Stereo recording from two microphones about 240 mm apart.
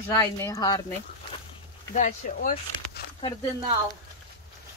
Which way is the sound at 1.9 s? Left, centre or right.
Left.